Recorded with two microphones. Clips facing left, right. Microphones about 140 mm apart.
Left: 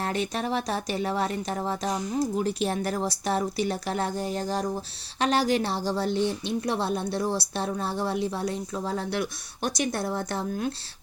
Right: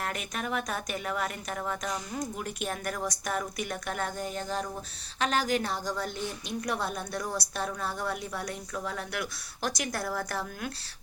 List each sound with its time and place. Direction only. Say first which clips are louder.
0.0 s a woman's voice: left 6 dB; 30° left (ahead or behind)